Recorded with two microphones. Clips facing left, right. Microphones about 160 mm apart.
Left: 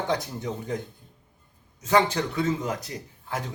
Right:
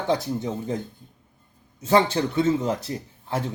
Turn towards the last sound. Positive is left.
turn(degrees=-30)  # may be behind; listen again after turning